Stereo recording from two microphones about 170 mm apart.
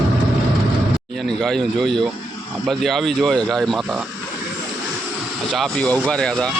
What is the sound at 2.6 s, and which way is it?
Speech, centre (ahead or behind).